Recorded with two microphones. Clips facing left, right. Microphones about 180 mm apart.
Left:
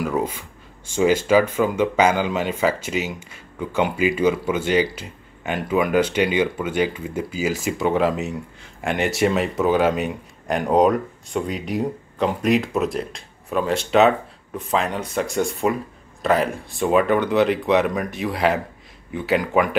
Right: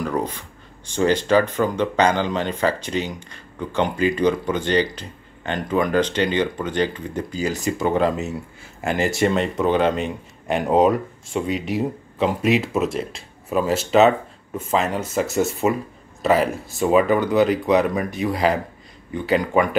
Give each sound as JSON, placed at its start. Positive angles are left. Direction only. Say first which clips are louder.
{"t": 0.0, "sound": "speech", "louder": "left 1 dB", "side_deg": 5}